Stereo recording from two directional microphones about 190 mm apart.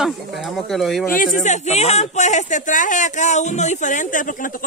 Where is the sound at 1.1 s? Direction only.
45° left (ahead or behind).